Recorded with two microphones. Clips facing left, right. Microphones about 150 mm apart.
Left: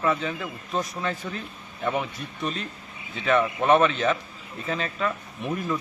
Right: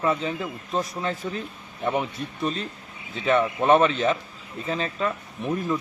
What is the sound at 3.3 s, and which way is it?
Speech, 25° right (ahead or behind).